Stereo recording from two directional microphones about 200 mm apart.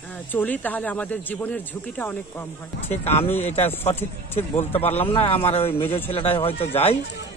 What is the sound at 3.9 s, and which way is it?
Speech, 10° left (ahead or behind).